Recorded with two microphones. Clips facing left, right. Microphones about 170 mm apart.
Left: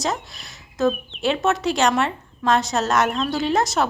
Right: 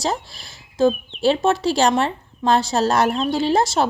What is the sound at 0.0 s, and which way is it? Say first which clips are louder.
A woman's voice: right 2 dB; 30° right (ahead or behind).